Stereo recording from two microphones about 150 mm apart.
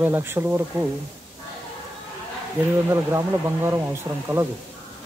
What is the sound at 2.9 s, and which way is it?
Speech, 15° right (ahead or behind).